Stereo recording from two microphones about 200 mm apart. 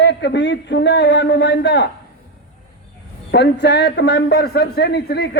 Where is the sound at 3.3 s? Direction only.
60° left (ahead or behind).